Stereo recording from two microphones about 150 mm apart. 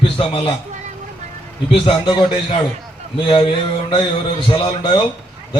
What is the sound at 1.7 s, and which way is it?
Speech, 35° left (ahead or behind).